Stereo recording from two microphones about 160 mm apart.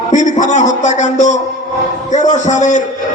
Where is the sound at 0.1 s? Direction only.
50° left (ahead or behind).